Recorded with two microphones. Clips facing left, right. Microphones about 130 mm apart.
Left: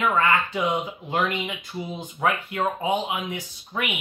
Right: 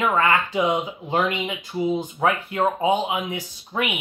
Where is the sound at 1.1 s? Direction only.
25° right (ahead or behind).